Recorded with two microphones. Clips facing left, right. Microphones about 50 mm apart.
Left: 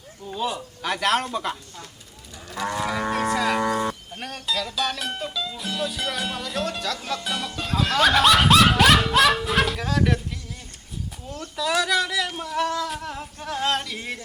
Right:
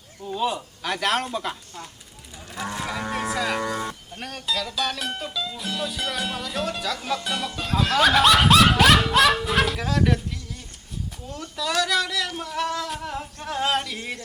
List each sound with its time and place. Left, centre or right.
0.3 s speech: centre
3.1 s speech: centre
3.6 s livestock: centre
4.2 s speech: centre
11.3 s speech: centre